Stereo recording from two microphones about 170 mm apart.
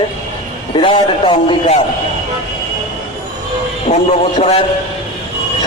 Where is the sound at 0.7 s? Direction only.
30° left (ahead or behind).